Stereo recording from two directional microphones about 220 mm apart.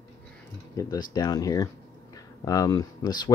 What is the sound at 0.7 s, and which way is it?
Speech, 15° left (ahead or behind).